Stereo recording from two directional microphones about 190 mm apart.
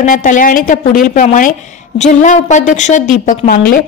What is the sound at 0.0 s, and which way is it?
A woman's voice, 40° left (ahead or behind).